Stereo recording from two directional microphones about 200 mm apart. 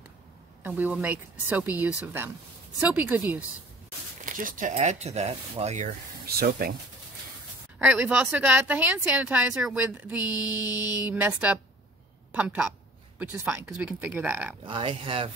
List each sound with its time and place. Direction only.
0.7 s speech: 10° right (ahead or behind)
4.3 s speech: 40° right (ahead or behind)
6.2 s speech: 45° right (ahead or behind)
7.8 s a woman's voice: 5° right (ahead or behind)
14.7 s speech: 25° right (ahead or behind)